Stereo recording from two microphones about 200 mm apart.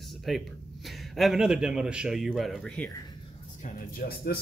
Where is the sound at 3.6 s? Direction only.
45° left (ahead or behind).